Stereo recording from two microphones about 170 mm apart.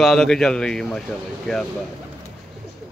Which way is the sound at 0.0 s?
Centre (ahead or behind).